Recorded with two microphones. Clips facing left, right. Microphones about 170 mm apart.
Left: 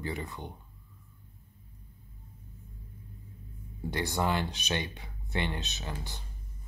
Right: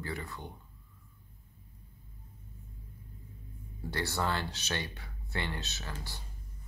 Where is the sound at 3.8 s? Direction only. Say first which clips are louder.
Left 3 dB; 15° left (ahead or behind).